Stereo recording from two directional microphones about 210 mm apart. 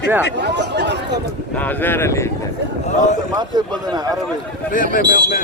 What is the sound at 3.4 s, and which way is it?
Speech, 20° right (ahead or behind).